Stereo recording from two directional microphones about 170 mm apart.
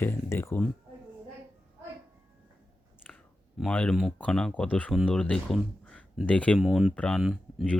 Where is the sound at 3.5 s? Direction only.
5° left (ahead or behind).